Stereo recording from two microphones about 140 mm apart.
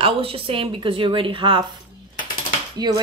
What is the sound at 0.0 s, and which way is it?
A woman's voice, 40° right (ahead or behind).